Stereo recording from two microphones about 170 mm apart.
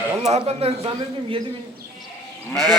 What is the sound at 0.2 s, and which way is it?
Speech, 40° right (ahead or behind).